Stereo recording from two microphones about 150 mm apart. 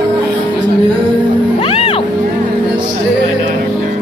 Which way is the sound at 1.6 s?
40° left (ahead or behind).